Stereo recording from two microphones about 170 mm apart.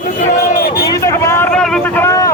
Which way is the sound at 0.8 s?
20° left (ahead or behind).